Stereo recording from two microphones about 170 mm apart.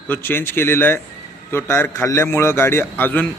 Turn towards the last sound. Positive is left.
turn(degrees=10)  # may be behind; listen again after turning